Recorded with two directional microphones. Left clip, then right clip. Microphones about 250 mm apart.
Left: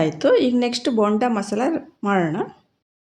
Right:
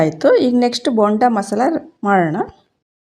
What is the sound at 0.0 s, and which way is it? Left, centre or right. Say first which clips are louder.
Speech: right 4 dB; centre.